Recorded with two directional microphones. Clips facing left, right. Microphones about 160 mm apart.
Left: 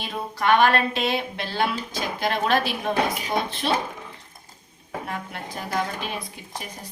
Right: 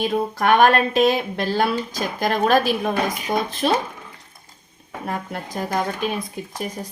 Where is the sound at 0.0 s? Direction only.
50° right (ahead or behind).